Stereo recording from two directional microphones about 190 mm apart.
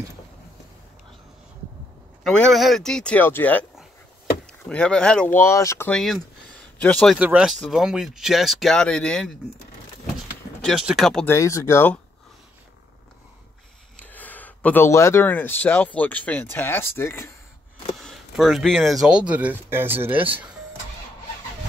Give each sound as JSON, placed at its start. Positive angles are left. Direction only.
{"t": 2.2, "sound": "speech", "side_deg": 0}
{"t": 10.6, "sound": "speech", "side_deg": 0}
{"t": 11.2, "sound": "speech", "side_deg": 15}
{"t": 13.9, "sound": "speech", "side_deg": 10}
{"t": 17.9, "sound": "speech", "side_deg": 0}